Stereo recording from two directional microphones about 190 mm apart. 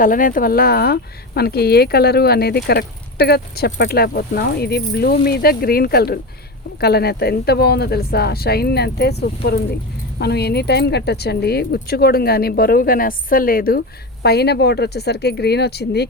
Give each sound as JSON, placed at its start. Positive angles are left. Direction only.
{"t": 0.0, "sound": "speech", "side_deg": 45}